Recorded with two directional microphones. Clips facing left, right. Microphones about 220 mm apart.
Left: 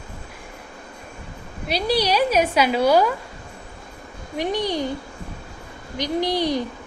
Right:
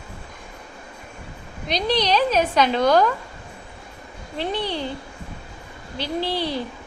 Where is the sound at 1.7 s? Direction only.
10° left (ahead or behind).